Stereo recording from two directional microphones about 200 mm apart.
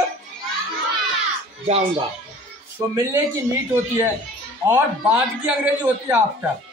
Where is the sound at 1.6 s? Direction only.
30° right (ahead or behind).